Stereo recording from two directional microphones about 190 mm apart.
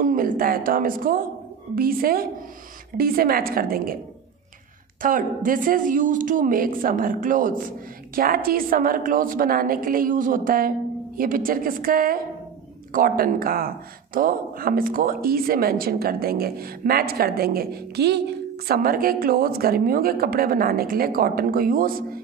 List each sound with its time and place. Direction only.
0.0 s speech: 45° right (ahead or behind)
5.0 s speech: 45° right (ahead or behind)